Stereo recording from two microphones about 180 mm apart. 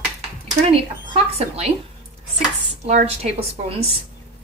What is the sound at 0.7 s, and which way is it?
A woman's voice, 35° right (ahead or behind).